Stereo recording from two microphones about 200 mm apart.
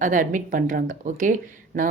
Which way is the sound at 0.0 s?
40° right (ahead or behind).